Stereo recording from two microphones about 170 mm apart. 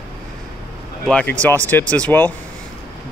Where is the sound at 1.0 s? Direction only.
5° left (ahead or behind).